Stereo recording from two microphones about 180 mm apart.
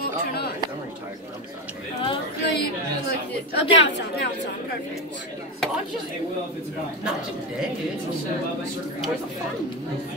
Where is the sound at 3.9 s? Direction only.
70° left (ahead or behind).